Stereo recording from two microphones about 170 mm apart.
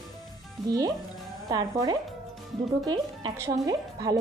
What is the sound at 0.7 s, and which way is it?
Speech, 20° right (ahead or behind).